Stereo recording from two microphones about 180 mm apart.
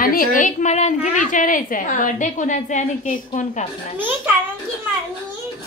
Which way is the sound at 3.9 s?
10° right (ahead or behind).